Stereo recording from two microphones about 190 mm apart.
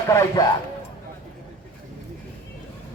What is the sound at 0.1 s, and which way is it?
Speech, 15° left (ahead or behind).